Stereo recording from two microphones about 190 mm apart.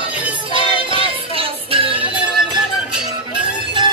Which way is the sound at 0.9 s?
30° right (ahead or behind).